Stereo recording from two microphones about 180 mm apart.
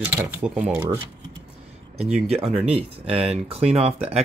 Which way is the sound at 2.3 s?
35° right (ahead or behind).